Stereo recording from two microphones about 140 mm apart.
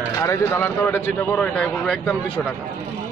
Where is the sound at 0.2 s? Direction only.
20° left (ahead or behind).